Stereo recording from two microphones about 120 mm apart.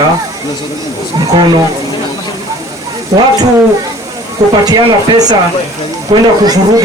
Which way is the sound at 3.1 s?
30° right (ahead or behind).